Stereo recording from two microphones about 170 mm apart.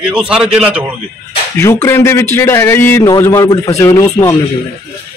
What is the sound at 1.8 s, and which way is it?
A man's voice, 15° left (ahead or behind).